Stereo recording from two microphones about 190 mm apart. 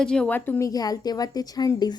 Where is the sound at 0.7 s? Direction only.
20° left (ahead or behind).